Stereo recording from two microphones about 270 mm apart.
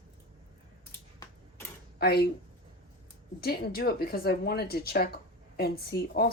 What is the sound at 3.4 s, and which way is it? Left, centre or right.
Speech, left.